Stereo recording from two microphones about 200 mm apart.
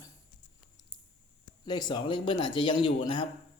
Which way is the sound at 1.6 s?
20° left (ahead or behind).